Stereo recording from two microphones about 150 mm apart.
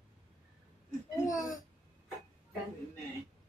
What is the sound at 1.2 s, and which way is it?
Speech, 25° left (ahead or behind).